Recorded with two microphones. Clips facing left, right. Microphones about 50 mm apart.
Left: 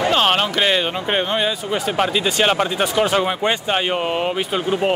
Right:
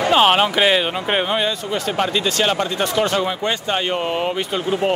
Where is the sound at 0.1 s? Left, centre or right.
Centre.